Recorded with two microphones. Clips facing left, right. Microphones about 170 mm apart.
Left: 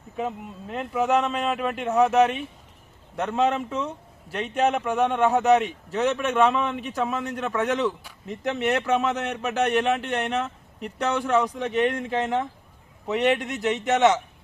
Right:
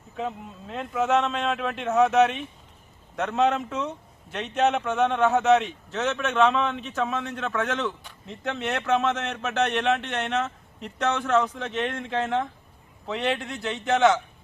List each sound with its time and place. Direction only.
0.2 s speech: 5° left (ahead or behind)